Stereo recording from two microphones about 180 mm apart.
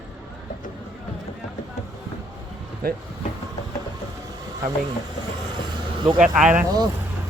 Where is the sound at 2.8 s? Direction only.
55° right (ahead or behind).